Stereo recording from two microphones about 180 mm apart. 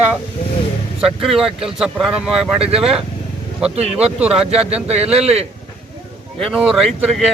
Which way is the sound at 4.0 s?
5° right (ahead or behind).